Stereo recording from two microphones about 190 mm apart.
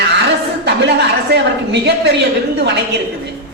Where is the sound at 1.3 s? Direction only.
60° right (ahead or behind).